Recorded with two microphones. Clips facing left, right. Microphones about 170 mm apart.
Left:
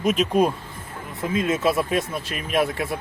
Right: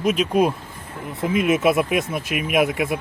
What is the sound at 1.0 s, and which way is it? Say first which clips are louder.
Speech: right 3 dB; 20° right (ahead or behind).